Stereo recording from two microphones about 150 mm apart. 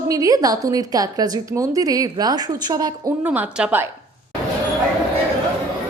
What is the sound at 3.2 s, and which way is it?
Speech, 10° right (ahead or behind).